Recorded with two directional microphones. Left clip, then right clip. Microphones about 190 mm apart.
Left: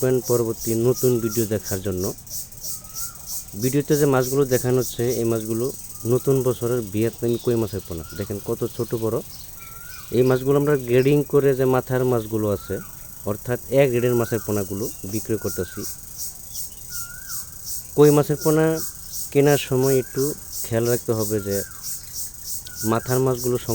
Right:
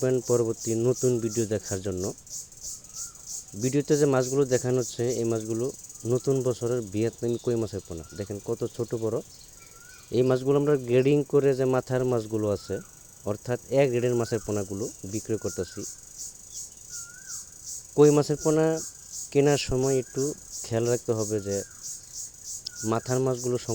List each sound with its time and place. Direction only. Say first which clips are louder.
0.0 s speech: left 4 dB; 35° right (ahead or behind)
3.6 s speech: left 3 dB; 35° right (ahead or behind)
17.9 s speech: left 4 dB; 35° right (ahead or behind)